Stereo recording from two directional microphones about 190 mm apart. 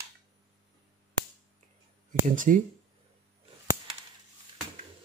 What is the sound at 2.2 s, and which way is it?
Speech, 45° right (ahead or behind).